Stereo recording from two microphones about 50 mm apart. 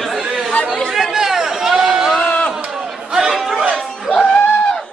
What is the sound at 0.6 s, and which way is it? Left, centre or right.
Chatter, centre.